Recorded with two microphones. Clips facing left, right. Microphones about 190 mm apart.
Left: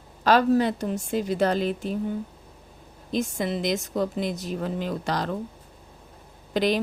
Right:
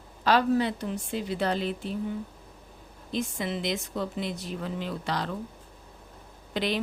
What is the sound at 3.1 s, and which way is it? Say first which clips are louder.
A woman's voice: left 4 dB; 45° left (ahead or behind).